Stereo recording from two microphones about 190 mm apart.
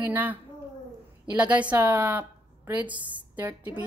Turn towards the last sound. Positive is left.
turn(degrees=-10)  # may be behind; listen again after turning